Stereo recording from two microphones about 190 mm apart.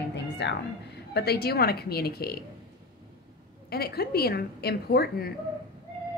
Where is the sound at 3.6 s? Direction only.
55° left (ahead or behind).